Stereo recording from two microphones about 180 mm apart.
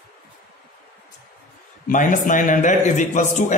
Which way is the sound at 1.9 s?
45° left (ahead or behind).